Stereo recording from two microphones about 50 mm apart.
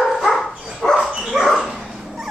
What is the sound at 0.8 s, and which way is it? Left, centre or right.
Dog, left.